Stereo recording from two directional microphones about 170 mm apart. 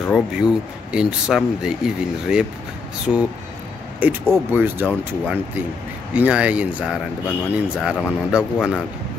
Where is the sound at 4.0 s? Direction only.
10° right (ahead or behind).